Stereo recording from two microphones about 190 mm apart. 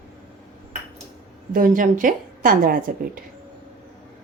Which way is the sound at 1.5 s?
45° right (ahead or behind).